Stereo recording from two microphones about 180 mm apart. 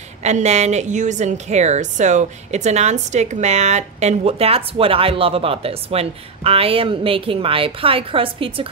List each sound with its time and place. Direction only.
0.2 s a woman's voice: 40° right (ahead or behind)